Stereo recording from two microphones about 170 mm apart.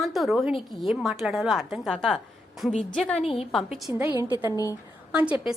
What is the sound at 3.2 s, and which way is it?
Speech, 35° left (ahead or behind).